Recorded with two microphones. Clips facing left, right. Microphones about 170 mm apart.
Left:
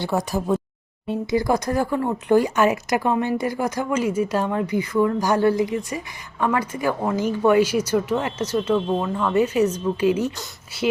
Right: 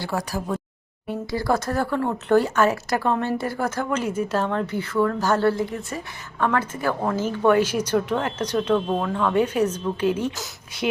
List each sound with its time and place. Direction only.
0.0 s speech: 20° left (ahead or behind)